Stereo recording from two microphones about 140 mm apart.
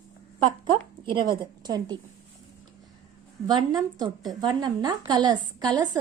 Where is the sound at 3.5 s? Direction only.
30° right (ahead or behind).